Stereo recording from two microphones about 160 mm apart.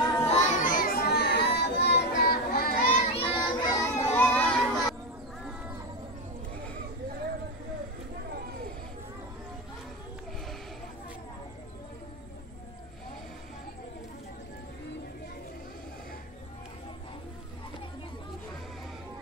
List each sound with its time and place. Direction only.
0.3 s children playing: 50° left (ahead or behind); by 3.0 s 70° left (ahead or behind)
3.0 s children playing: 35° left (ahead or behind); by 4.9 s 10° left (ahead or behind)